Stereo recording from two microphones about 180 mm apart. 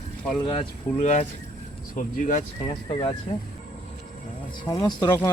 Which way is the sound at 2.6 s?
30° left (ahead or behind).